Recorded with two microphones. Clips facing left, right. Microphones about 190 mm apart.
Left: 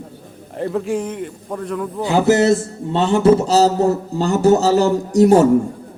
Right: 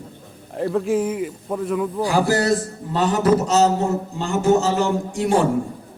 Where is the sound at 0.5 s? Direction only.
Centre (ahead or behind).